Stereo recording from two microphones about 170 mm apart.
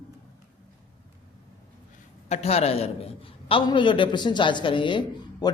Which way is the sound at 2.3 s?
40° left (ahead or behind).